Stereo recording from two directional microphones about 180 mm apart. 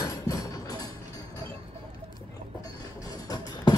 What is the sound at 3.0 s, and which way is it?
Music, 20° left (ahead or behind).